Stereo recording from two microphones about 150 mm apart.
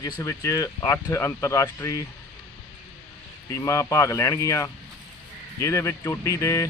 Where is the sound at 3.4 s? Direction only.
20° left (ahead or behind).